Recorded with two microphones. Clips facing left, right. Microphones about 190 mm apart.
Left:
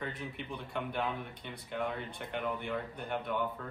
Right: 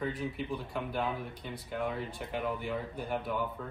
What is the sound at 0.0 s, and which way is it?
Speech, centre (ahead or behind).